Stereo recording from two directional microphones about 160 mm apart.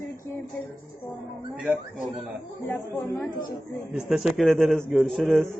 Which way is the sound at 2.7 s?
15° left (ahead or behind).